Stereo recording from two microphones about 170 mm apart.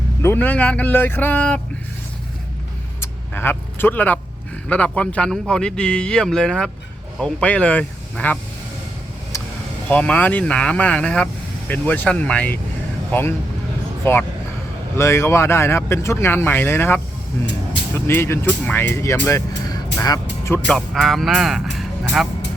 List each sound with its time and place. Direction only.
0.2 s speech: 10° left (ahead or behind)
3.0 s vehicle: 10° left (ahead or behind)
4.7 s speech: 5° left (ahead or behind)
9.3 s vehicle: 15° left (ahead or behind)
9.9 s speech: 10° left (ahead or behind)
20.7 s speech: centre (ahead or behind)